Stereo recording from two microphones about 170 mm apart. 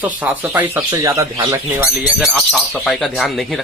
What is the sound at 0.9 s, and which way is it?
Speech, 20° right (ahead or behind).